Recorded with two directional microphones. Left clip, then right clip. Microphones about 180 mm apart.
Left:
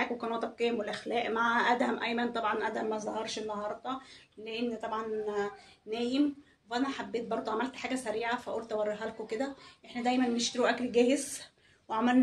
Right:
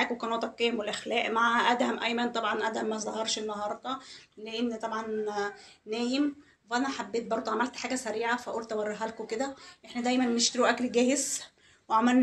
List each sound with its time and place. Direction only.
0.0 s a woman's voice: 25° right (ahead or behind)